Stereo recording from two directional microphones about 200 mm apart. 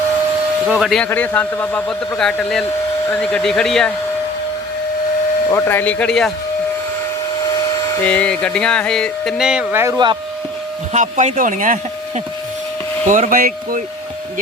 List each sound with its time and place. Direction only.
0.7 s a man's voice: centre (ahead or behind)
5.5 s speech: 15° left (ahead or behind)
8.0 s a man's voice: 5° left (ahead or behind)
10.9 s speech: 35° right (ahead or behind)